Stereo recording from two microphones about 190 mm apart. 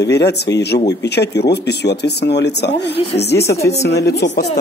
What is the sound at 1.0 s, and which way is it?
Speech, 60° left (ahead or behind).